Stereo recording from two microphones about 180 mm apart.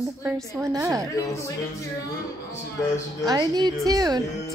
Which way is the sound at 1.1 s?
20° left (ahead or behind).